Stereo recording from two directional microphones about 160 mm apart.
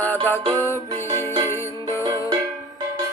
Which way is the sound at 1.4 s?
15° left (ahead or behind).